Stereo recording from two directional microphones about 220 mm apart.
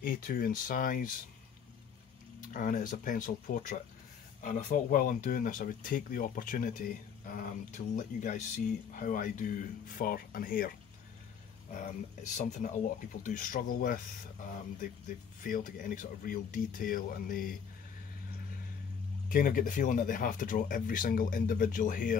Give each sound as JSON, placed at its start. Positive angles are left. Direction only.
{"t": 0.0, "sound": "speech", "side_deg": 40}
{"t": 2.4, "sound": "speech", "side_deg": 40}
{"t": 11.7, "sound": "speech", "side_deg": 35}
{"t": 15.4, "sound": "speech", "side_deg": 40}
{"t": 19.2, "sound": "speech", "side_deg": 40}